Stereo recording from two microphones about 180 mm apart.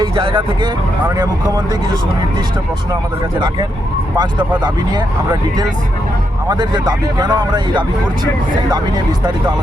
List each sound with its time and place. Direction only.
0.0 s speech: 30° right (ahead or behind)
4.2 s speech: 25° right (ahead or behind)